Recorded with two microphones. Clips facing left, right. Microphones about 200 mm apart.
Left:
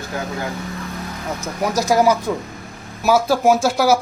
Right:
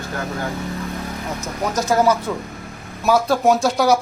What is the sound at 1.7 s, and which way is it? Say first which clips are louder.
Speech: left 1 dB; 10° left (ahead or behind).